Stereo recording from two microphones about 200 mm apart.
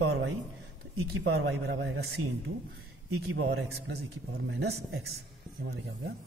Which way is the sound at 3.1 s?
85° right.